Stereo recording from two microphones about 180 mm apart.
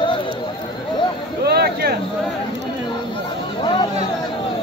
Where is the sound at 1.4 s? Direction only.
60° right (ahead or behind).